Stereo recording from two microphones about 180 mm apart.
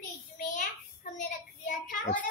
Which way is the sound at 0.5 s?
45° left (ahead or behind).